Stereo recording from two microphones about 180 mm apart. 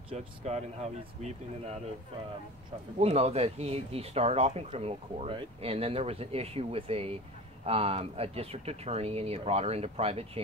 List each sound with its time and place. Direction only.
0.1 s speech: 35° right (ahead or behind)
3.0 s speech: 35° right (ahead or behind)